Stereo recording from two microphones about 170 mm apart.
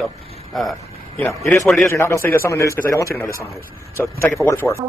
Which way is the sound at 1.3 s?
20° left (ahead or behind).